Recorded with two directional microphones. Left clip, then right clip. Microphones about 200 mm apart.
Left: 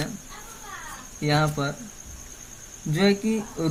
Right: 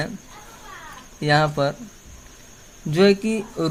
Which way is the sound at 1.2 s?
55° right (ahead or behind).